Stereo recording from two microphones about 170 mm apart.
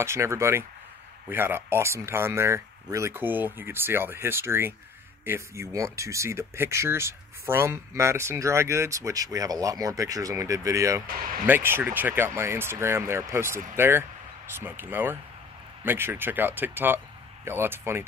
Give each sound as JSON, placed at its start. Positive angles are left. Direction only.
{"t": 0.0, "sound": "speech", "side_deg": -15}